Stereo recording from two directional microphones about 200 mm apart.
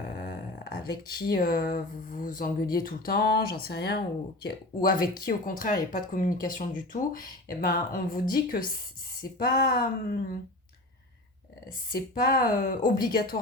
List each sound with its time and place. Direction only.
0.3 s a sound: 50° left (ahead or behind)
1.3 s speech: 45° left (ahead or behind)
11.9 s speech: 50° left (ahead or behind)